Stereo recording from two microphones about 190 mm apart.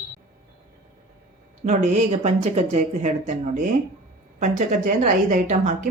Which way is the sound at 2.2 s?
40° right (ahead or behind).